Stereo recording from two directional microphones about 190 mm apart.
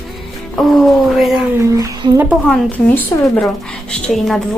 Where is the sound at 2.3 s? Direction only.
5° left (ahead or behind).